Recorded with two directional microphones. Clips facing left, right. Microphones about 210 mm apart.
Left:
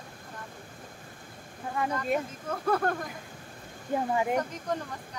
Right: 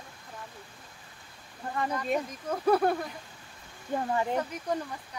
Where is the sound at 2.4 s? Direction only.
10° right (ahead or behind).